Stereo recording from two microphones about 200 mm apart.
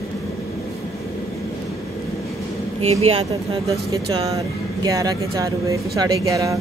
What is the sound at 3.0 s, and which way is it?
Speech, 30° right (ahead or behind).